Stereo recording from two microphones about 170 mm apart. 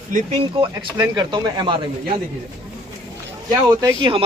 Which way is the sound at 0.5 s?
30° right (ahead or behind).